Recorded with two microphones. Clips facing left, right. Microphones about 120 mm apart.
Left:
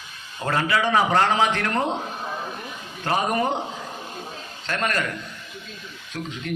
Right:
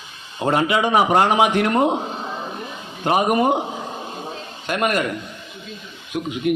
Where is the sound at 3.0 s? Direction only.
15° right (ahead or behind).